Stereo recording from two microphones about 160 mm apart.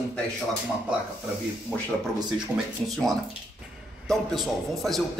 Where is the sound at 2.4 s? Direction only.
Centre (ahead or behind).